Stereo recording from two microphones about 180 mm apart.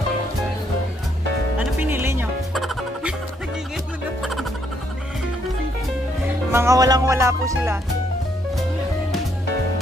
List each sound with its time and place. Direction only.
1.6 s music: 10° right (ahead or behind)
2.5 s music: centre (ahead or behind)
4.2 s music: centre (ahead or behind)
6.5 s speech: 15° right (ahead or behind)